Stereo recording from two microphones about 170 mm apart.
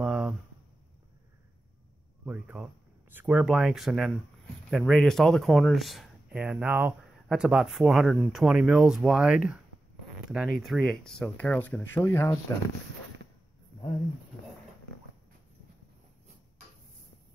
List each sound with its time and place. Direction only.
0.0 s a sound: 5° right (ahead or behind)
2.2 s speech: 10° right (ahead or behind)
10.6 s speech: centre (ahead or behind)